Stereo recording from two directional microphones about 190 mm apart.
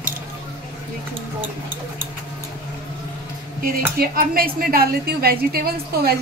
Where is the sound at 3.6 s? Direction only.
50° right (ahead or behind).